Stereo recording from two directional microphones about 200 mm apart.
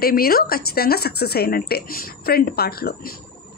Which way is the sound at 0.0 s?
50° left (ahead or behind).